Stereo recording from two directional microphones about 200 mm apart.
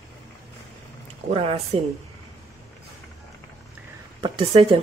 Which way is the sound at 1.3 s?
30° right (ahead or behind).